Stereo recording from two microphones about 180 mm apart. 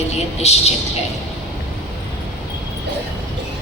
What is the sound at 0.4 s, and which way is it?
Speech, 35° left (ahead or behind).